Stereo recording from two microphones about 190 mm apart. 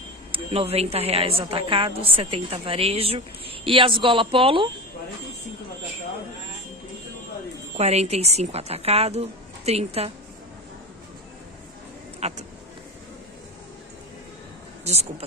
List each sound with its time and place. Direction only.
0.3 s a woman's voice: 30° right (ahead or behind)
7.7 s a woman's voice: 35° right (ahead or behind)
12.2 s speech: 35° right (ahead or behind)
14.9 s a woman's voice: 35° right (ahead or behind)